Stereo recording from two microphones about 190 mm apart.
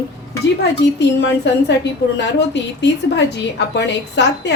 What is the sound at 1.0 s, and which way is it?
A woman's voice, 65° left (ahead or behind).